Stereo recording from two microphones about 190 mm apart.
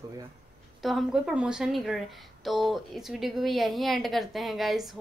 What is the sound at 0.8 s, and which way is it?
Speech, centre (ahead or behind).